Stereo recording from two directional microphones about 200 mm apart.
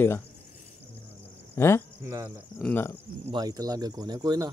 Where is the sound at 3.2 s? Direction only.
20° right (ahead or behind).